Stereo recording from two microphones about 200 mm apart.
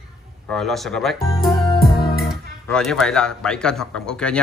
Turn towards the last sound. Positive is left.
turn(degrees=5)  # may be behind; listen again after turning